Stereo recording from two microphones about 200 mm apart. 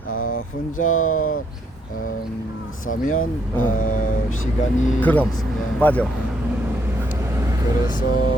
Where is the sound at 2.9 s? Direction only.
40° left (ahead or behind).